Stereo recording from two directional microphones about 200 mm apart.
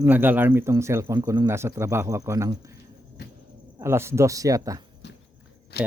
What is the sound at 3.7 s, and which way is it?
Speech, 15° right (ahead or behind).